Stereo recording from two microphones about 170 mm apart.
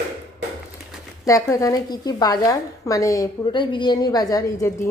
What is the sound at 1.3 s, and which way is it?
A woman's voice, 20° left (ahead or behind).